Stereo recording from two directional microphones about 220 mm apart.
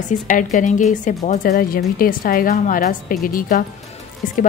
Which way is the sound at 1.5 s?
45° left (ahead or behind).